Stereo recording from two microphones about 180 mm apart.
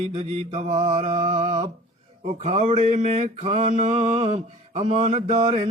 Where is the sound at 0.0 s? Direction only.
35° right (ahead or behind).